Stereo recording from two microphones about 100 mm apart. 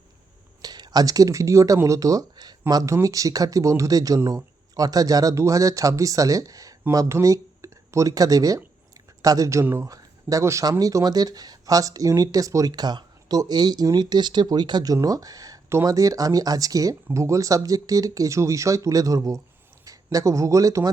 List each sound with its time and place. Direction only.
0.6 s speech: 40° right (ahead or behind)